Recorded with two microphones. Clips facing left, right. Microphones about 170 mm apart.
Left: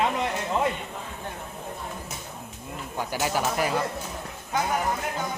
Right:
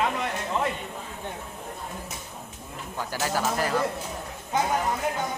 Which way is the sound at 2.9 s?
15° left (ahead or behind).